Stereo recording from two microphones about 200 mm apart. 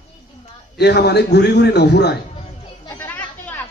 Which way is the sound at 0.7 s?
55° left (ahead or behind).